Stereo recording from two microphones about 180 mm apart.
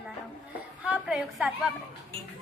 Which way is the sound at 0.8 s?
5° right (ahead or behind).